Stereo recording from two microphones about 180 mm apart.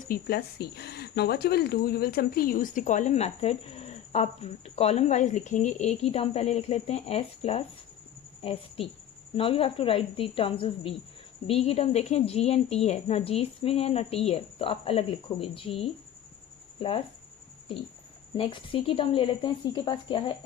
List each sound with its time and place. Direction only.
0.1 s a woman's voice: 60° left (ahead or behind); by 16.9 s 30° left (ahead or behind)
18.3 s a woman's voice: 30° left (ahead or behind)